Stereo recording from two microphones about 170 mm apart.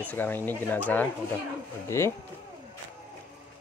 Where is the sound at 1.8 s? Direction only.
15° left (ahead or behind).